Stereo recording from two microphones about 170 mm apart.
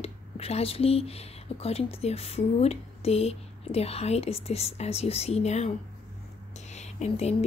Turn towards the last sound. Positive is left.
turn(degrees=40)  # may be behind; listen again after turning